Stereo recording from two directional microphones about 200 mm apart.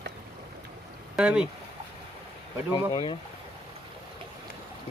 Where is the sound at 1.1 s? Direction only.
5° right (ahead or behind).